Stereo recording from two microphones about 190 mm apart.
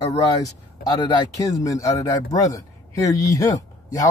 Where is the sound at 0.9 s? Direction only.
25° left (ahead or behind).